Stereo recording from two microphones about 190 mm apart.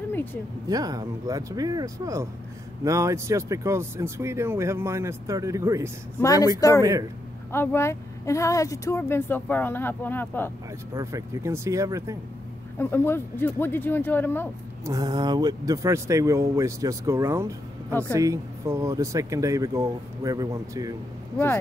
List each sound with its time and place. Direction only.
0.1 s a sound: 10° left (ahead or behind)
0.7 s speech: 20° right (ahead or behind)
6.2 s speech: 20° left (ahead or behind)
6.8 s speech: 15° right (ahead or behind)
7.5 s speech: 15° left (ahead or behind)
11.0 s speech: 15° right (ahead or behind)
12.7 s speech: 10° left (ahead or behind)
14.9 s speech: 20° right (ahead or behind)